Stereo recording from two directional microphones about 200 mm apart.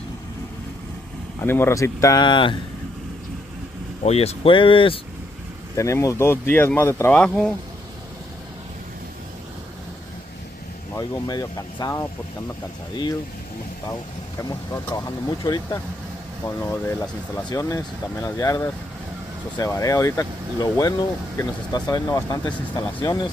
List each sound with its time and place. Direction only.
1.4 s speech: 10° left (ahead or behind)
4.0 s speech: 30° left (ahead or behind)
5.8 s speech: 15° left (ahead or behind)
11.0 s speech: 20° left (ahead or behind)
14.5 s speech: 15° left (ahead or behind)